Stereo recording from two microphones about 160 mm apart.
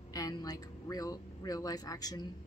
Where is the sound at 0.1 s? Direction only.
25° left (ahead or behind).